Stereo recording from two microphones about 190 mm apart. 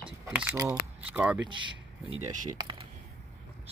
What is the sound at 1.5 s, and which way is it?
Speech, 25° right (ahead or behind).